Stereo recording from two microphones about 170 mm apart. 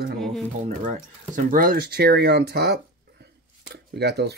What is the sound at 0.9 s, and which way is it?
Speech, 50° right (ahead or behind).